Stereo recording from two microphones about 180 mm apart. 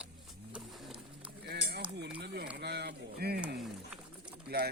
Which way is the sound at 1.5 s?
65° right (ahead or behind).